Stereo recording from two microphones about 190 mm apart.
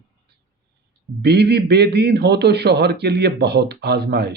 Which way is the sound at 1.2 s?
60° right (ahead or behind).